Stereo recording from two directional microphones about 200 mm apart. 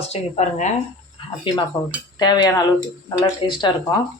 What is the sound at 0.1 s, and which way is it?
Speech, 35° left (ahead or behind).